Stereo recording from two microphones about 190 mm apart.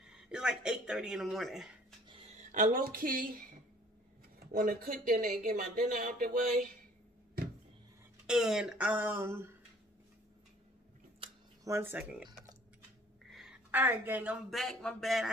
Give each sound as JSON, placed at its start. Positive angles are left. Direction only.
{"t": 0.0, "sound": "speech", "side_deg": -5}
{"t": 2.0, "sound": "a sound", "side_deg": -30}
{"t": 2.5, "sound": "speech", "side_deg": -45}
{"t": 4.4, "sound": "speech", "side_deg": -45}
{"t": 8.3, "sound": "speech", "side_deg": 0}
{"t": 11.6, "sound": "speech", "side_deg": -15}
{"t": 13.3, "sound": "speech", "side_deg": -5}